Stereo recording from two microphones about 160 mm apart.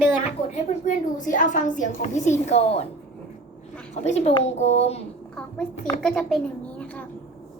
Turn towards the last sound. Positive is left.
turn(degrees=10)  # may be behind; listen again after turning